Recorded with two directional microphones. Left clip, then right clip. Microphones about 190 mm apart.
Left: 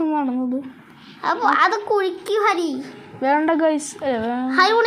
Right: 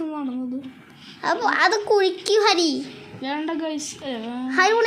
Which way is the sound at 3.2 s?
25° left (ahead or behind).